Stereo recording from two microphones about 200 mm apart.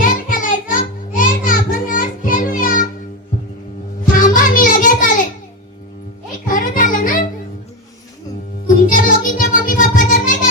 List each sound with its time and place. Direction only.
0.0 s child singing: 45° left (ahead or behind)
4.1 s child singing: 40° left (ahead or behind)
6.5 s a sound: 40° left (ahead or behind)
8.6 s music: 40° left (ahead or behind)